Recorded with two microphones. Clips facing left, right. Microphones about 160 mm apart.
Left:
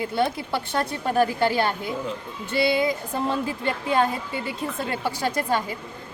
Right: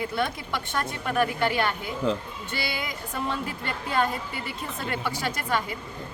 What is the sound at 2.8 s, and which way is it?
A woman's voice, 30° left (ahead or behind).